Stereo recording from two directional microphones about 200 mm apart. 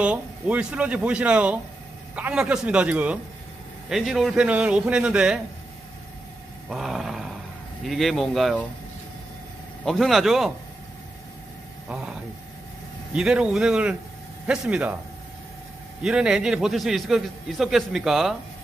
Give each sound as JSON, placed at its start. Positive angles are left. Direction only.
{"t": 0.0, "sound": "a man's voice", "side_deg": -5}
{"t": 6.7, "sound": "a sound", "side_deg": 0}
{"t": 7.8, "sound": "a man's voice", "side_deg": 0}
{"t": 9.8, "sound": "a man's voice", "side_deg": 0}
{"t": 11.9, "sound": "a man's voice", "side_deg": -5}
{"t": 16.0, "sound": "a man's voice", "side_deg": -5}